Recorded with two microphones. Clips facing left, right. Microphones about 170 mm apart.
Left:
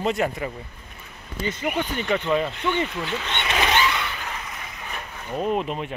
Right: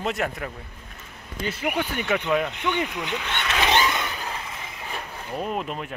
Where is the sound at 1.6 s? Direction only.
5° right (ahead or behind).